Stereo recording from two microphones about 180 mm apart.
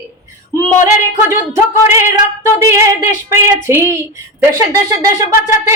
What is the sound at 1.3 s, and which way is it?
Speech, 15° right (ahead or behind).